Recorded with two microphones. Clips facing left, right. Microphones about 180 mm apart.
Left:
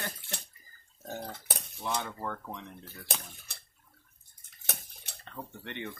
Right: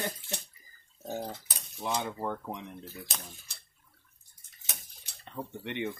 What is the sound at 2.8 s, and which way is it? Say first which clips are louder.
Speech: left 1 dB; 60° left (ahead or behind).